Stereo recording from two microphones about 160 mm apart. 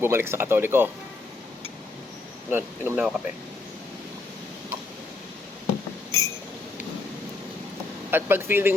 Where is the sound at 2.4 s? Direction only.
10° right (ahead or behind).